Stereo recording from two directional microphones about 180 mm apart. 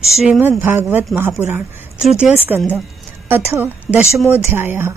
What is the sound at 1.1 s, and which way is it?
A woman's voice, 10° right (ahead or behind).